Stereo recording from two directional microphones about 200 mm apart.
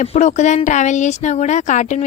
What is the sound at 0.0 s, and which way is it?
Speech, 35° left (ahead or behind).